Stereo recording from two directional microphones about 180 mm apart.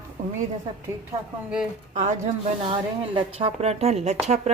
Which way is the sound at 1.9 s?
40° right (ahead or behind).